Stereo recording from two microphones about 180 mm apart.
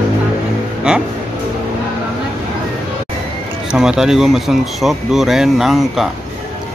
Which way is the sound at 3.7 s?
5° right (ahead or behind).